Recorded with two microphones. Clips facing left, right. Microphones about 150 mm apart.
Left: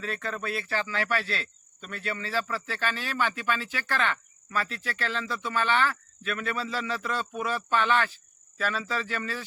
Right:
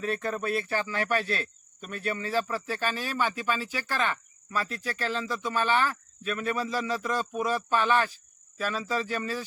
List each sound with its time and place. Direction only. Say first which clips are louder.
0.0 s speech: right 3 dB; 20° right (ahead or behind)
0.7 s cricket: right 1 dB; 15° right (ahead or behind)